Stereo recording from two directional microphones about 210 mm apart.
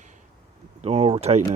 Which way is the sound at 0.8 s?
30° right (ahead or behind).